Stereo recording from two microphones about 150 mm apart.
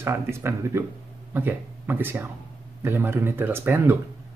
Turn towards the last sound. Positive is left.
turn(degrees=-15)  # may be behind; listen again after turning